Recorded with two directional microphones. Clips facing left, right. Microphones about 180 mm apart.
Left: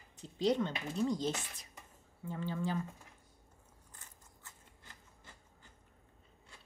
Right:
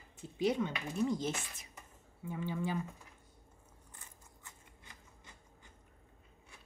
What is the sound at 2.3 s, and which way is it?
Speech, 15° right (ahead or behind).